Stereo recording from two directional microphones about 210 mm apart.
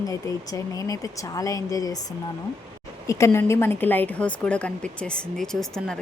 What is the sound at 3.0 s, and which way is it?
Speech, 15° left (ahead or behind).